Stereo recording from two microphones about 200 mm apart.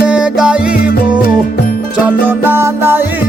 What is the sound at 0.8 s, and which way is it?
Music, 50° left (ahead or behind).